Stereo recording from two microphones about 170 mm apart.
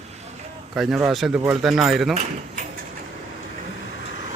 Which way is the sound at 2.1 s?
45° right (ahead or behind).